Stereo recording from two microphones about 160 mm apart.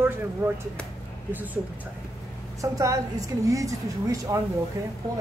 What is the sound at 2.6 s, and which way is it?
A woman's voice, 20° right (ahead or behind).